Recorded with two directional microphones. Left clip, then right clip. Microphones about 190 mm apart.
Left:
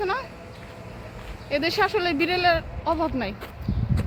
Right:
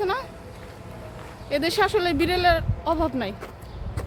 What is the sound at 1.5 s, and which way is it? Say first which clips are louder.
Speech: right 1 dB; centre (ahead or behind).